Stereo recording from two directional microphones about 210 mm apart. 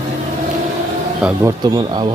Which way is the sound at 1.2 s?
15° right (ahead or behind).